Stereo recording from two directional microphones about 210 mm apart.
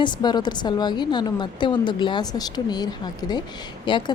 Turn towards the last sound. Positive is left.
turn(degrees=20)  # may be behind; listen again after turning